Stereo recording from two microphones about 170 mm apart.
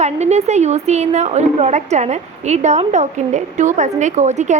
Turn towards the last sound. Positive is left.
turn(degrees=-45)  # may be behind; listen again after turning